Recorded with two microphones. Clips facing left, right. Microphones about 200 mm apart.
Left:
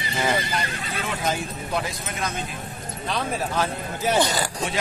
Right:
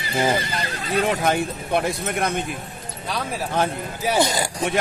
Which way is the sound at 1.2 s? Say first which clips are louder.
Right 5 dB; 60° right (ahead or behind).